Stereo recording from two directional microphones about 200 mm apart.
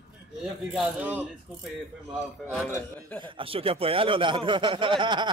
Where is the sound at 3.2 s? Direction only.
25° right (ahead or behind).